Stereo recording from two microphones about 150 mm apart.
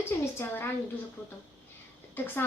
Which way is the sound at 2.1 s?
15° left (ahead or behind).